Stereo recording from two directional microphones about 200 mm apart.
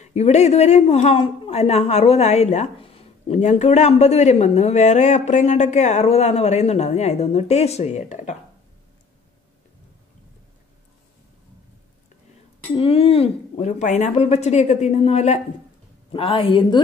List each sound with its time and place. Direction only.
0.0 s a woman's voice: 35° left (ahead or behind)
12.7 s a woman's voice: 30° left (ahead or behind)